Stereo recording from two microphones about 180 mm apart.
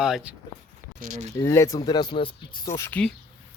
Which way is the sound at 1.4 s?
15° left (ahead or behind).